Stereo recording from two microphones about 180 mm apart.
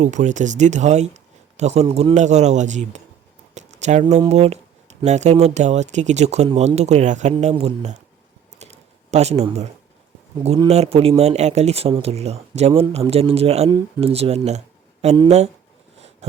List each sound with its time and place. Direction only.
0.0 s speech: 40° right (ahead or behind)
3.5 s a sound: 40° right (ahead or behind)
4.3 s speech: 35° right (ahead or behind)
7.3 s speech: 30° right (ahead or behind)
8.5 s typing: 35° right (ahead or behind)
10.3 s speech: 30° right (ahead or behind)
15.1 s speech: 25° right (ahead or behind)